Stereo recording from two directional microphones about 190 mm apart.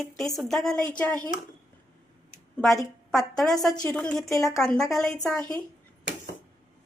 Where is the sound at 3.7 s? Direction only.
20° left (ahead or behind).